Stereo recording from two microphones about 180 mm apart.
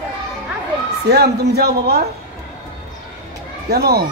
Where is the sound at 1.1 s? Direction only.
65° right (ahead or behind).